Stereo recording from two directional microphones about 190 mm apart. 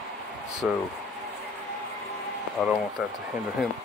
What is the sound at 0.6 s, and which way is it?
Speech, 5° right (ahead or behind).